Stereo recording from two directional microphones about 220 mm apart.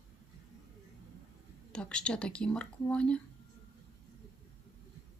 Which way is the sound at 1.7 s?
5° left (ahead or behind).